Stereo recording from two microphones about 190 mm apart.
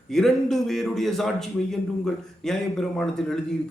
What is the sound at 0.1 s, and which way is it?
Speech, centre (ahead or behind).